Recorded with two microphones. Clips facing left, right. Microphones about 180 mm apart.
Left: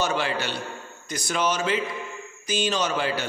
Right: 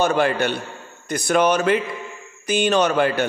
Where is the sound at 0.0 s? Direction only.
55° right (ahead or behind).